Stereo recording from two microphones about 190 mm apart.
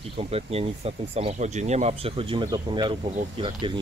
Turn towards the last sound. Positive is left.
turn(degrees=-25)  # may be behind; listen again after turning